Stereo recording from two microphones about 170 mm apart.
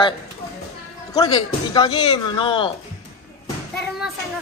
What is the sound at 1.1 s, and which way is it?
Speech, 25° left (ahead or behind).